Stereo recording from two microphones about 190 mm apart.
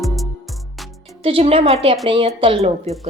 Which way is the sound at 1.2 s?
30° right (ahead or behind).